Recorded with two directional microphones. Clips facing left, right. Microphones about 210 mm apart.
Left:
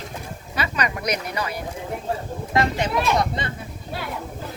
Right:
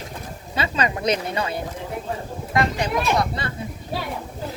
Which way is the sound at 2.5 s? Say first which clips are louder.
Even; 25° left (ahead or behind).